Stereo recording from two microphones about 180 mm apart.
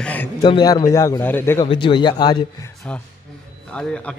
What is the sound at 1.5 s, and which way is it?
Speech, 25° left (ahead or behind).